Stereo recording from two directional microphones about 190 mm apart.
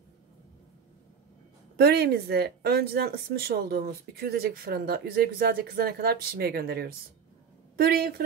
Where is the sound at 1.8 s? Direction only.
55° right (ahead or behind).